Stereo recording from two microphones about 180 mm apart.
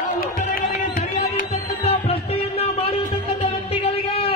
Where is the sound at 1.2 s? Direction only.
35° left (ahead or behind).